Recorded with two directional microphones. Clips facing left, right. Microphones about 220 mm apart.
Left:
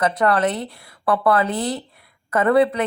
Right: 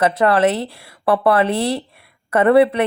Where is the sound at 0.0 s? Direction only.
25° right (ahead or behind).